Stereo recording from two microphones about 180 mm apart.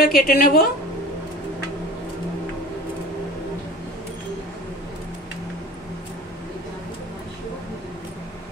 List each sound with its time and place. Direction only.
0.0 s a woman's voice: 55° left (ahead or behind)